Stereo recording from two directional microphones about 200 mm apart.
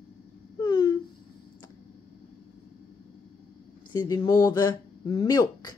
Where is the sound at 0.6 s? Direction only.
20° left (ahead or behind).